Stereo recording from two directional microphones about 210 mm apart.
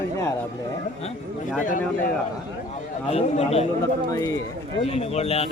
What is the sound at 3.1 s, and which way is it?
Speech, 30° left (ahead or behind).